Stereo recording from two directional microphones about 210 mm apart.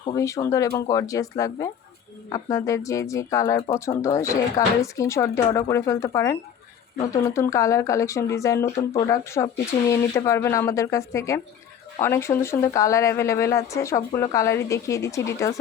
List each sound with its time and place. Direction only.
0.0 s speech: 15° left (ahead or behind)